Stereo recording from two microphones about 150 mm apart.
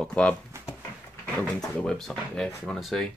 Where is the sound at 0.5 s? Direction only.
15° right (ahead or behind).